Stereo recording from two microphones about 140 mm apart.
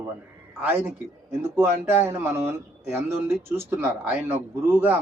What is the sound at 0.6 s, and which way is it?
A man's voice, 15° right (ahead or behind).